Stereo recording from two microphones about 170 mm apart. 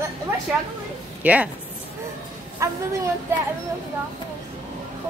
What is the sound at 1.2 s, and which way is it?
Speech, 10° right (ahead or behind).